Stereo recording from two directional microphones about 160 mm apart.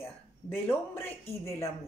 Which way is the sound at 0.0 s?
15° left (ahead or behind).